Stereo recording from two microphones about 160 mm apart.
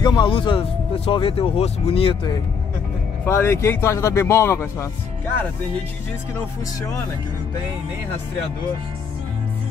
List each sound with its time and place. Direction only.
0.0 s speech: 25° left (ahead or behind)
3.3 s speech: 15° left (ahead or behind)